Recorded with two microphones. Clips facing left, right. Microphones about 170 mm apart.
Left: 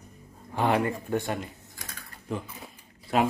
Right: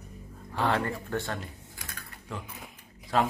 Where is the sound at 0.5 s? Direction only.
15° left (ahead or behind).